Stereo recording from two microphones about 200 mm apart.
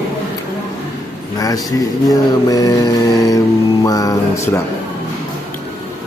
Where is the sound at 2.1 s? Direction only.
15° left (ahead or behind).